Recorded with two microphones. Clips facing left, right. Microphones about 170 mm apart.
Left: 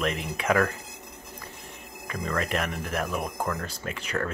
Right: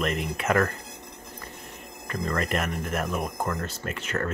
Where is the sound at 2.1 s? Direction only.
Centre (ahead or behind).